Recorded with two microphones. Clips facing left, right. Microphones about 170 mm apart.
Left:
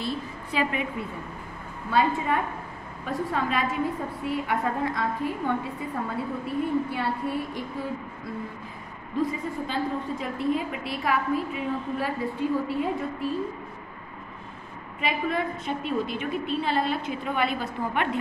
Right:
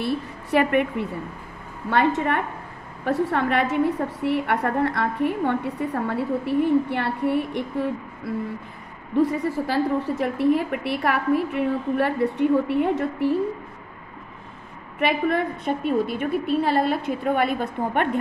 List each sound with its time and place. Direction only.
0.0 s a woman's voice: 65° right (ahead or behind)
9.3 s a woman's voice: 75° right (ahead or behind)
15.0 s a woman's voice: 65° right (ahead or behind)